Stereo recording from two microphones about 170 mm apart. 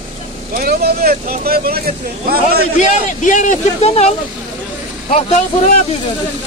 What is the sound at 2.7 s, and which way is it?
A man's voice, 50° left (ahead or behind).